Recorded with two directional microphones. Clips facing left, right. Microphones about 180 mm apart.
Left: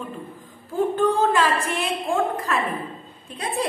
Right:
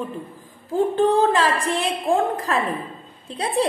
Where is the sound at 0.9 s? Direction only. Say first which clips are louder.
Right 2 dB; 35° right (ahead or behind).